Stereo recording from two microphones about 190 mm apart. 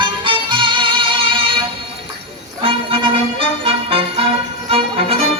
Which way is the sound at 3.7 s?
30° right (ahead or behind).